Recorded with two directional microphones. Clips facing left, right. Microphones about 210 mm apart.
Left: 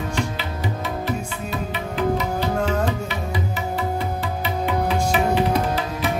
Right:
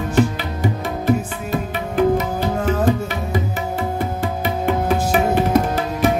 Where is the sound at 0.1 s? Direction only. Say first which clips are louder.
Right 8 dB; 50° right (ahead or behind).